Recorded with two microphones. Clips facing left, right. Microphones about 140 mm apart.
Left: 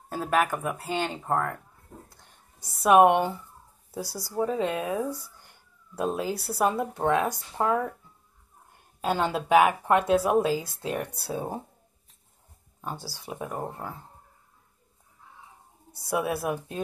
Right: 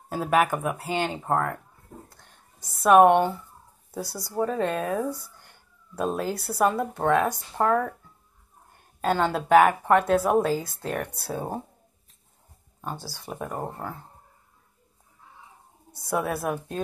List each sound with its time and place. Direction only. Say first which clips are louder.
0.1 s speech: right 3 dB; 5° right (ahead or behind)
2.0 s a sound: right 2 dB; 5° left (ahead or behind)
4.4 s speech: right 1 dB; 5° left (ahead or behind)
9.0 s speech: right 2 dB; 5° left (ahead or behind)
12.8 s speech: right 1 dB; 5° left (ahead or behind)
15.9 s speech: right 1 dB; 5° left (ahead or behind)